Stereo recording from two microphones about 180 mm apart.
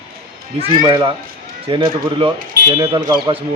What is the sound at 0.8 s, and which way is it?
Speech, 20° right (ahead or behind).